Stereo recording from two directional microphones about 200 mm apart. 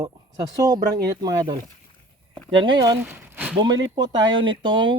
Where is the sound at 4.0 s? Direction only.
20° right (ahead or behind).